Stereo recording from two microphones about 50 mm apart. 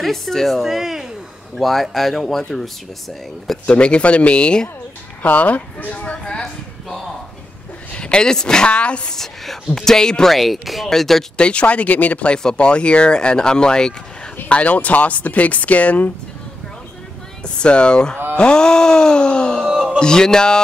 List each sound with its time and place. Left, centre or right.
0.0 s speech: centre
1.6 s speech: centre
3.6 s speech: left
5.2 s speech: left
6.2 s a sound: centre
7.9 s speech: centre
9.1 s music: centre
10.3 s speech: centre
11.3 s speech: left
14.5 s speech: left
17.6 s speech: left
18.4 s music: centre
19.7 s a sound: centre
20.0 s music: centre